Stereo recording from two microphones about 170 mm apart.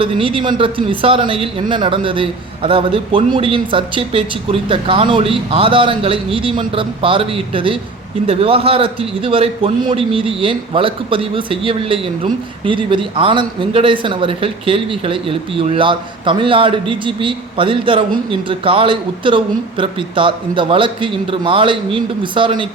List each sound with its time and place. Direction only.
0.0 s speech: 30° right (ahead or behind)